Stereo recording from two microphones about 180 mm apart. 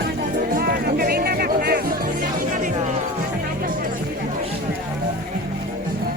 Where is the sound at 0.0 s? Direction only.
60° right (ahead or behind).